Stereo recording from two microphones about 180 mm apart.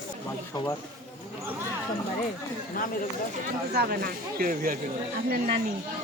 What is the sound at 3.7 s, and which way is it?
Speech, 55° right (ahead or behind).